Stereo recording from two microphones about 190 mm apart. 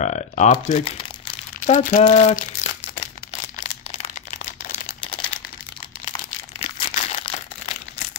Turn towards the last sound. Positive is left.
turn(degrees=30)  # may be behind; listen again after turning